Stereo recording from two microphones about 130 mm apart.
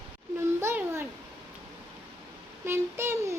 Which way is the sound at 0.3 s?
20° right (ahead or behind).